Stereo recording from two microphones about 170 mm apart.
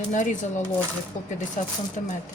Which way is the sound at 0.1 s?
45° left (ahead or behind).